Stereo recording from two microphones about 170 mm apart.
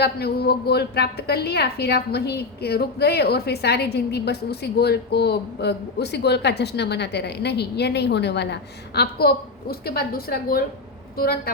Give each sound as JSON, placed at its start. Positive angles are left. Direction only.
{"t": 0.0, "sound": "a woman's voice", "side_deg": 70}
{"t": 9.0, "sound": "a woman's voice", "side_deg": 65}